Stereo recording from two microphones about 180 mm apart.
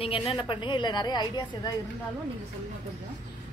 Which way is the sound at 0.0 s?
30° left (ahead or behind).